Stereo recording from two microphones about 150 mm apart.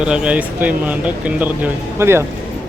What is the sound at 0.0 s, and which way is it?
Speech, 5° right (ahead or behind).